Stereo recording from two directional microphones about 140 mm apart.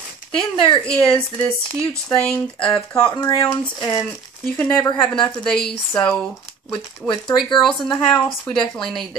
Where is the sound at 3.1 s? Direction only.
25° left (ahead or behind).